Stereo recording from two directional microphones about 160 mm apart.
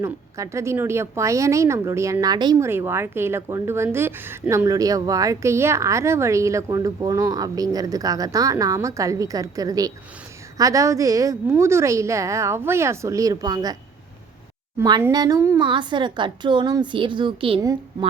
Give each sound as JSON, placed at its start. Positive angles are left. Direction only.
{"t": 0.0, "sound": "speech", "side_deg": -20}
{"t": 15.1, "sound": "speech", "side_deg": -25}